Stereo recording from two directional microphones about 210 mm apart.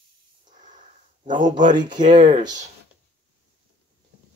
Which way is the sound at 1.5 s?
20° right (ahead or behind).